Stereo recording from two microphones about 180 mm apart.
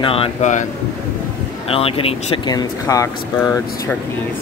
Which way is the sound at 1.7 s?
30° left (ahead or behind).